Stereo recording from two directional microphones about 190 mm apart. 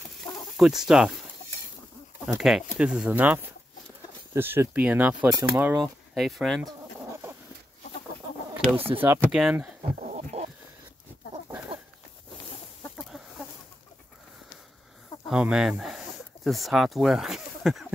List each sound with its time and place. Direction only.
0.0 s fowl: centre (ahead or behind)
2.2 s speech: centre (ahead or behind)
8.7 s speech: 30° right (ahead or behind)
9.0 s speech: 10° right (ahead or behind)
9.9 s livestock: 40° right (ahead or behind)
15.2 s speech: 5° right (ahead or behind)